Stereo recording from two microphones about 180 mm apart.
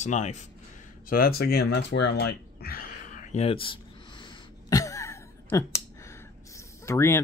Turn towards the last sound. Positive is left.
turn(degrees=15)  # may be behind; listen again after turning